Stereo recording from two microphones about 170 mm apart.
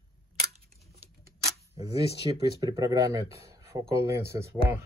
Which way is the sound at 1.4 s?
20° right (ahead or behind).